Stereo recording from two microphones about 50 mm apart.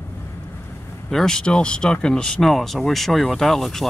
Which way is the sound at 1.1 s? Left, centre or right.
Centre.